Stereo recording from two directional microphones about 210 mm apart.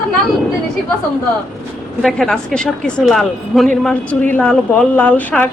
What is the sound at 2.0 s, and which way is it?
A woman's voice, centre (ahead or behind).